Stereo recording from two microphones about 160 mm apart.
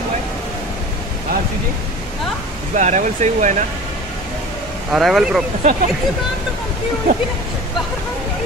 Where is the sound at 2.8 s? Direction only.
50° right (ahead or behind).